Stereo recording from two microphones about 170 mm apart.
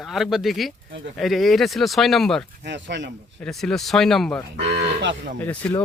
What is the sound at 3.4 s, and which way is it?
Speech, 5° left (ahead or behind).